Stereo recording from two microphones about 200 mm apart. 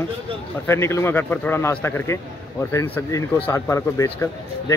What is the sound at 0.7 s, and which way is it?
Speech, 15° left (ahead or behind).